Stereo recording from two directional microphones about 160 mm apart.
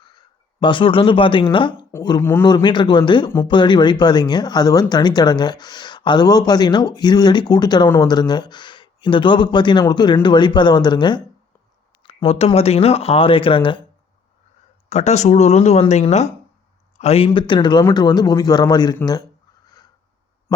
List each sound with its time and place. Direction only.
0.0 s speech: 30° left (ahead or behind)
2.2 s a man's voice: 15° left (ahead or behind)
2.5 s speech: 30° left (ahead or behind)
12.0 s speech: 40° left (ahead or behind)
14.8 s speech: 45° left (ahead or behind); by 18.9 s 25° left (ahead or behind)
19.6 s a sound: 25° left (ahead or behind)